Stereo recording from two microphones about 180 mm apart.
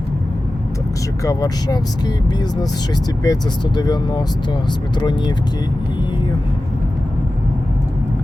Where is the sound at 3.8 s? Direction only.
20° left (ahead or behind).